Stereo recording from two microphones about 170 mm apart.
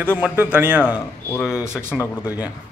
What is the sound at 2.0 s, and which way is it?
Speech, 20° left (ahead or behind).